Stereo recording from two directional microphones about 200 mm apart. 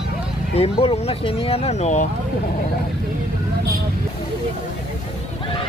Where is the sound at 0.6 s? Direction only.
30° left (ahead or behind).